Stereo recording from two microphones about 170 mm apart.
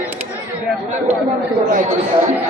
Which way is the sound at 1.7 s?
50° right (ahead or behind).